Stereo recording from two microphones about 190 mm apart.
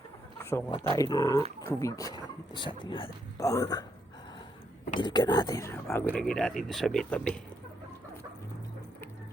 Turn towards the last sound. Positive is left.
turn(degrees=5)  # may be behind; listen again after turning